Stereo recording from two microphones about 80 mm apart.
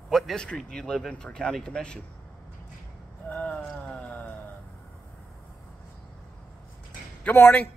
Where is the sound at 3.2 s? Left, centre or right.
Centre.